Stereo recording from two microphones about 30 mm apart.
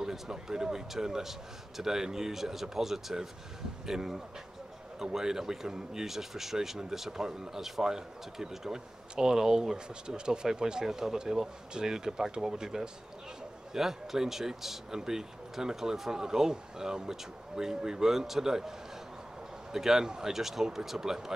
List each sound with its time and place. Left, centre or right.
0.0 s speech: centre